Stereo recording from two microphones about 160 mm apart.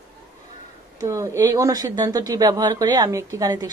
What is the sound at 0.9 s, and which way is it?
Speech, 20° right (ahead or behind).